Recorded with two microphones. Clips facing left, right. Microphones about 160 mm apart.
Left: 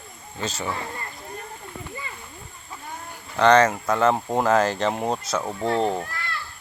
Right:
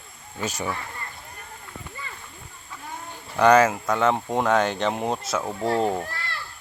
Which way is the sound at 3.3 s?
10° right (ahead or behind).